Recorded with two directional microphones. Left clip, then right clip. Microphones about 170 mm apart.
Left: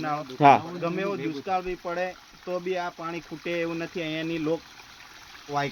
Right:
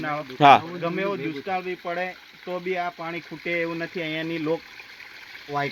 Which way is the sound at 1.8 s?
20° right (ahead or behind).